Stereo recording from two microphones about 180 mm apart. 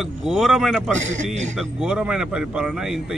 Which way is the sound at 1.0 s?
40° right (ahead or behind).